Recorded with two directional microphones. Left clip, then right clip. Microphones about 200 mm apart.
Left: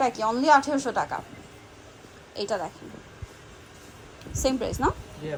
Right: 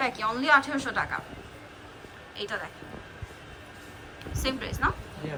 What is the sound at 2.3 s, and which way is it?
Speech, 25° left (ahead or behind).